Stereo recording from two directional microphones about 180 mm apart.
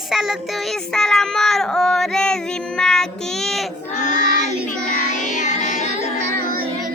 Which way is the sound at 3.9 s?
45° left (ahead or behind).